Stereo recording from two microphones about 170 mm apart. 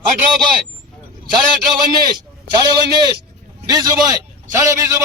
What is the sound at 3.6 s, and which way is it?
A man's voice, 25° right (ahead or behind).